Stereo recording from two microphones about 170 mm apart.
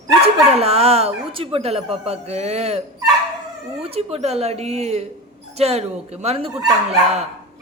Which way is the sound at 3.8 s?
35° right (ahead or behind).